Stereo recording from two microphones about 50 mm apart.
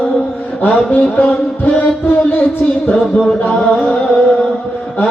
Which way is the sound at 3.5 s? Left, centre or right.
Left.